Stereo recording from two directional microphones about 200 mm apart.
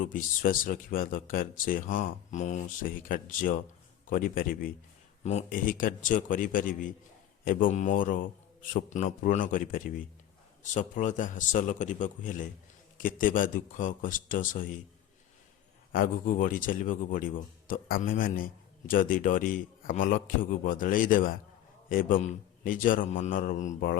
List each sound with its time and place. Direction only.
0.0 s a man's voice: 40° left (ahead or behind)
15.9 s a man's voice: 45° left (ahead or behind)